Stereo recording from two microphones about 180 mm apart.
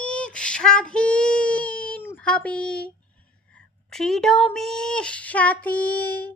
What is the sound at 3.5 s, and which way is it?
Speech, centre (ahead or behind).